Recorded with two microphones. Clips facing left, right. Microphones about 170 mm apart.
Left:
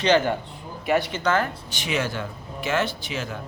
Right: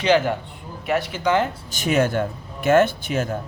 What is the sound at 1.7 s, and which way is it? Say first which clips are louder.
A man's voice: right 8 dB; 45° right (ahead or behind).